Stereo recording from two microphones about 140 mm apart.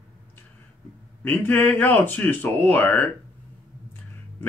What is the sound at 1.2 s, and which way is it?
Speech, 15° left (ahead or behind).